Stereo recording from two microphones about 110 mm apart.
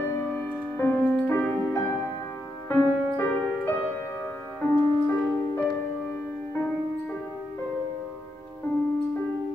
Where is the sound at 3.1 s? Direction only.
20° left (ahead or behind).